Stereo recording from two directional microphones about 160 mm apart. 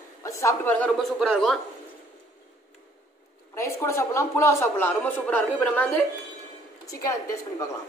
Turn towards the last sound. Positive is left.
turn(degrees=20)  # may be behind; listen again after turning